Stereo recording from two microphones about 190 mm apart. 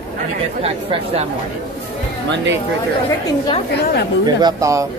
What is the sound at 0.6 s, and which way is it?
Speech, 30° right (ahead or behind).